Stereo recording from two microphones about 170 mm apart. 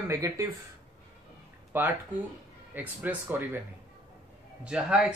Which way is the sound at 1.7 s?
10° right (ahead or behind).